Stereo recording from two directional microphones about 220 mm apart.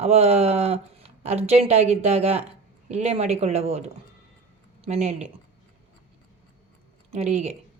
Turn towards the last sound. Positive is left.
turn(degrees=-30)  # may be behind; listen again after turning